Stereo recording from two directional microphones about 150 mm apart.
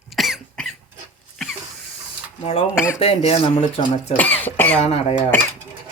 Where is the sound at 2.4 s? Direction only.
45° left (ahead or behind).